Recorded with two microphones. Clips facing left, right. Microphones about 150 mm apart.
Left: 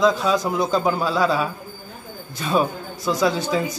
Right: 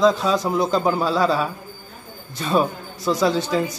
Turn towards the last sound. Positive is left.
turn(degrees=5)  # may be behind; listen again after turning